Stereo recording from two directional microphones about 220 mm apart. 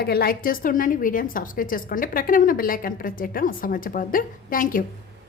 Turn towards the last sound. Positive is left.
turn(degrees=40)  # may be behind; listen again after turning